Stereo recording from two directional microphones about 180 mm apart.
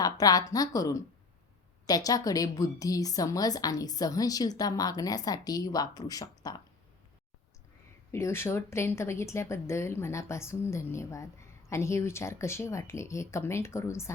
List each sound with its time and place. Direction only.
0.0 s a woman's voice: 20° left (ahead or behind)
8.1 s speech: 15° left (ahead or behind)